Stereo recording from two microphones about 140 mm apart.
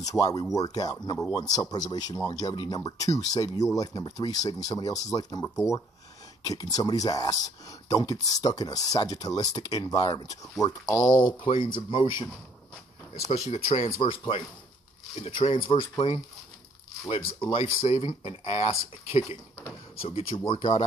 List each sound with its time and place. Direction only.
0.0 s speech: 25° left (ahead or behind)
13.5 s speech: 45° left (ahead or behind)
17.5 s speech: 45° left (ahead or behind)